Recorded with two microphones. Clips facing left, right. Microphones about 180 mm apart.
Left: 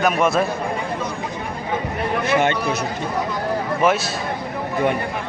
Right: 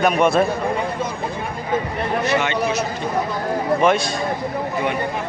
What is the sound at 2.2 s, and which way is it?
Speech, 50° left (ahead or behind).